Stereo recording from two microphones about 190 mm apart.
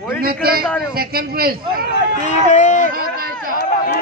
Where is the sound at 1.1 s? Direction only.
50° right (ahead or behind).